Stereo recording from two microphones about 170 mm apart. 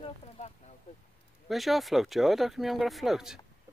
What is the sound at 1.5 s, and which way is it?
Speech, centre (ahead or behind).